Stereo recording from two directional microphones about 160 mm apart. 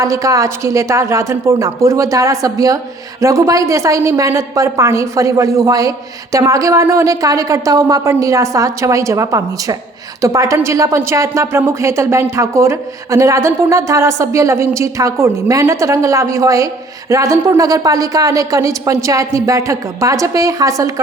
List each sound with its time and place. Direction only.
0.0 s a woman's voice: 20° right (ahead or behind)